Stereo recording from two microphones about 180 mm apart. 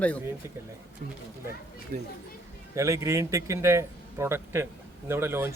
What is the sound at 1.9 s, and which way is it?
Speech, 50° right (ahead or behind).